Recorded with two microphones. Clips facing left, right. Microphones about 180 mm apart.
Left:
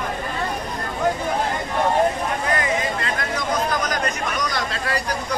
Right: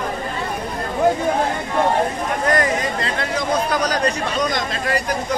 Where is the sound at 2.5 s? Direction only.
35° right (ahead or behind).